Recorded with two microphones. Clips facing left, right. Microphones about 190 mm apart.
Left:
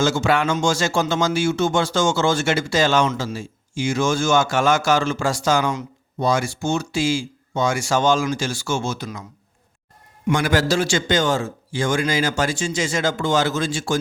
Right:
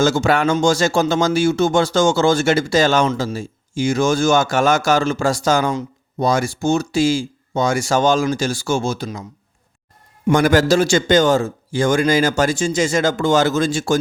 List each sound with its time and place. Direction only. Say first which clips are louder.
0.0 s speech: right 3 dB; 40° right (ahead or behind)
10.2 s a man's voice: right 5 dB; 45° right (ahead or behind)